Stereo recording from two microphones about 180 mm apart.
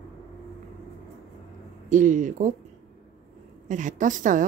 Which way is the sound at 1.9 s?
45° right (ahead or behind).